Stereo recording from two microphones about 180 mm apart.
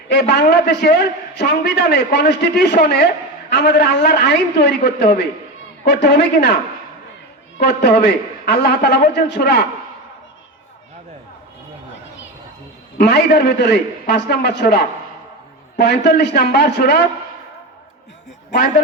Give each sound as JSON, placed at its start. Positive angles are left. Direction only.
{"t": 0.1, "sound": "a man's voice", "side_deg": 70}
{"t": 7.6, "sound": "a man's voice", "side_deg": 70}
{"t": 13.0, "sound": "a man's voice", "side_deg": 65}
{"t": 15.8, "sound": "a man's voice", "side_deg": 70}